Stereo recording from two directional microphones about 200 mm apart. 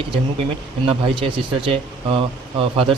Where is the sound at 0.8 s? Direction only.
25° right (ahead or behind).